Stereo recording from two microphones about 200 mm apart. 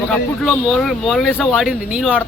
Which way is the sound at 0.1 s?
Centre (ahead or behind).